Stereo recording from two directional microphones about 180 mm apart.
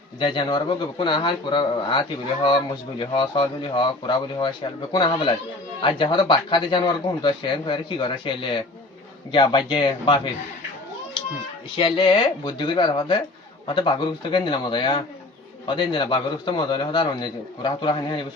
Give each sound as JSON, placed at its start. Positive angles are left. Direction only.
{"t": 0.2, "sound": "speech", "side_deg": 25}
{"t": 11.8, "sound": "speech", "side_deg": 25}